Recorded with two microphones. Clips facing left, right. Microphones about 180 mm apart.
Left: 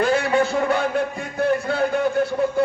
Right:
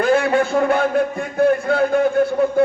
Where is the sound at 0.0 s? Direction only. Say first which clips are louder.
Right 3 dB; 50° right (ahead or behind).